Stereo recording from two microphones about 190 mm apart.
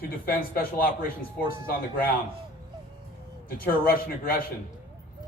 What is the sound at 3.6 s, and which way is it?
Speech, 50° left (ahead or behind).